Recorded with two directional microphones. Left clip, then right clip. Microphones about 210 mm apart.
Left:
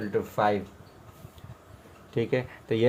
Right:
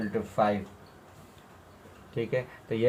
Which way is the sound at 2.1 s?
45° left (ahead or behind).